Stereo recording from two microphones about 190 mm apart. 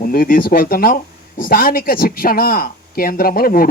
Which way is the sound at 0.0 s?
50° left (ahead or behind).